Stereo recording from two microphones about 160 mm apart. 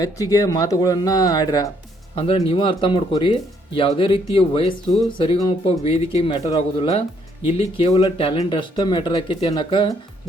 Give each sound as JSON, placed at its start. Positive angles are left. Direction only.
{"t": 0.0, "sound": "speech", "side_deg": 20}
{"t": 2.1, "sound": "speech", "side_deg": 35}